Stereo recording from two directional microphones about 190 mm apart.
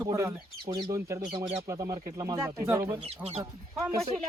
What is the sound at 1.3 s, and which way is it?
Speech, 30° right (ahead or behind).